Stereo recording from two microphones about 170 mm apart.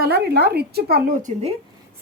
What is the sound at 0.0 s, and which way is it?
Speech, 70° right (ahead or behind).